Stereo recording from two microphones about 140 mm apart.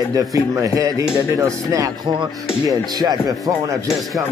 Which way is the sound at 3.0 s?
30° right (ahead or behind).